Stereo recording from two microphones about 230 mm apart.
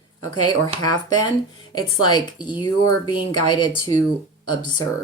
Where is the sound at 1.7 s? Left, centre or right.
Centre.